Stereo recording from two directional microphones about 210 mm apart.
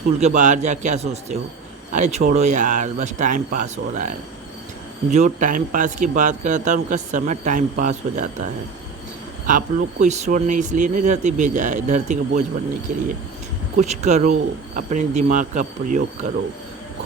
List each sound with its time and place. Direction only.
0.2 s a man's voice: 35° right (ahead or behind)
5.1 s a man's voice: 35° right (ahead or behind)
9.5 s a man's voice: 35° right (ahead or behind)